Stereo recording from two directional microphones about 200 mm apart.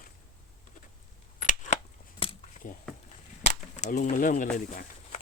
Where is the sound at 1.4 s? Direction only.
40° left (ahead or behind).